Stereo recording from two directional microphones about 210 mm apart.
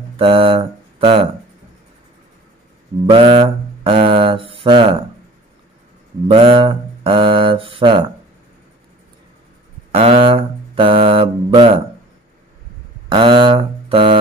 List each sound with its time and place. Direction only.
0.2 s mantra: 25° right (ahead or behind)
3.1 s speech: 25° right (ahead or behind)
6.2 s mantra: 25° right (ahead or behind)
9.9 s mantra: 25° right (ahead or behind)
13.1 s mantra: 25° right (ahead or behind)